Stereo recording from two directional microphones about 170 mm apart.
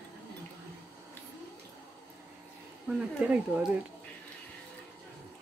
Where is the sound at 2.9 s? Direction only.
5° right (ahead or behind).